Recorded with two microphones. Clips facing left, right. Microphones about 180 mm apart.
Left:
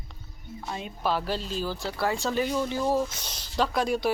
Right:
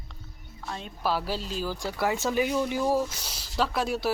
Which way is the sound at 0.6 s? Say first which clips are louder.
Left 2 dB; 10° left (ahead or behind).